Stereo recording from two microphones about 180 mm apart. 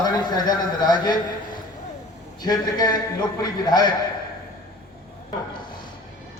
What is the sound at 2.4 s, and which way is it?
A man's voice, 20° left (ahead or behind).